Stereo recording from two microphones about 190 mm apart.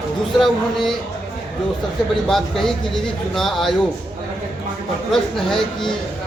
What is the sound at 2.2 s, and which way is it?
Speech, centre (ahead or behind).